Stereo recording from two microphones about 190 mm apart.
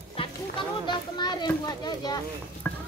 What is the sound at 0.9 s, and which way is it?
A child's voice, 20° left (ahead or behind).